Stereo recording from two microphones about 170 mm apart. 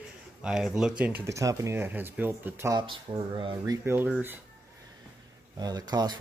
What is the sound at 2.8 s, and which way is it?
Speech, 30° right (ahead or behind).